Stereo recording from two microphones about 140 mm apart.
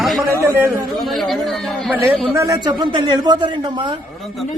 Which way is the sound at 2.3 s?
20° right (ahead or behind).